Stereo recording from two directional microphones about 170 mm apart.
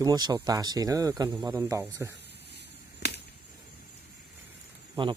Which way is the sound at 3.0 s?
70° left (ahead or behind).